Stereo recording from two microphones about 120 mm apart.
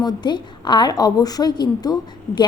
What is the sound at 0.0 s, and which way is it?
A woman's voice, 35° left (ahead or behind).